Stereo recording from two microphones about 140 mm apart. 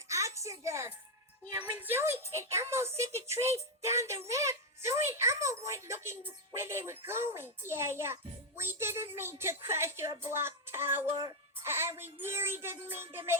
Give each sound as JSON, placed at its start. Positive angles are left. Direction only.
{"t": 0.1, "sound": "music", "side_deg": -20}
{"t": 1.7, "sound": "a woman's voice", "side_deg": -15}